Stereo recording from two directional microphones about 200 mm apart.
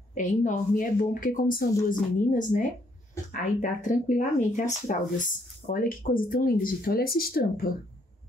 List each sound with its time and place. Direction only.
0.1 s speech: 40° left (ahead or behind)
3.8 s speech: 40° left (ahead or behind)